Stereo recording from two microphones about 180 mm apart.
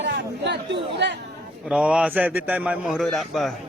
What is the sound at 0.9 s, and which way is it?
Speech, 75° right (ahead or behind).